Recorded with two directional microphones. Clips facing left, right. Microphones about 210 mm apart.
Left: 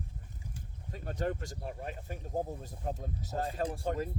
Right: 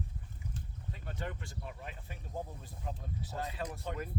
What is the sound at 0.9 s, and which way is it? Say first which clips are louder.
Speech: left 8 dB; 40° left (ahead or behind).